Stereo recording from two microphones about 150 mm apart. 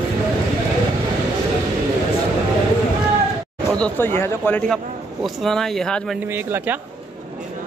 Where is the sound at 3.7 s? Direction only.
10° left (ahead or behind).